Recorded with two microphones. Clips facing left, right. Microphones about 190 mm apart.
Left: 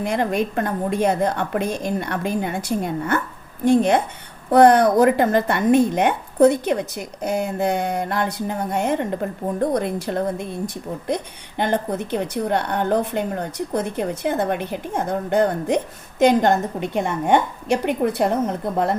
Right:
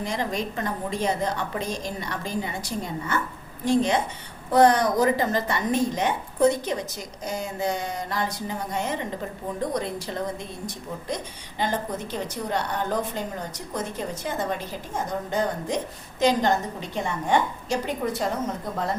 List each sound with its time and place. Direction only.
0.0 s a woman's voice: 55° left (ahead or behind)